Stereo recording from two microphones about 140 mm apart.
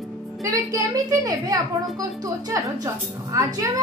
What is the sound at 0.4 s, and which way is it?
Speech, 25° right (ahead or behind).